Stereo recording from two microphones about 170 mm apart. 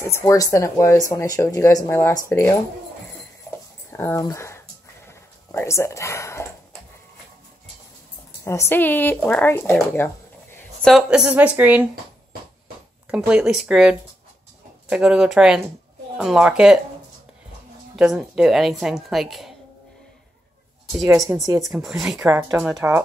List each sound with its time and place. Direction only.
0.0 s speech: 15° left (ahead or behind)
3.9 s bleat: 15° left (ahead or behind)
8.5 s speech: 15° left (ahead or behind)
10.8 s speech: centre (ahead or behind)
13.1 s a woman's voice: 5° right (ahead or behind)
17.9 s a woman's voice: 5° right (ahead or behind)
21.5 s a woman's voice: centre (ahead or behind)